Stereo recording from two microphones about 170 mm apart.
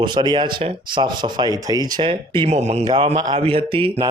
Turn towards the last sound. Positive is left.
turn(degrees=-30)  # may be behind; listen again after turning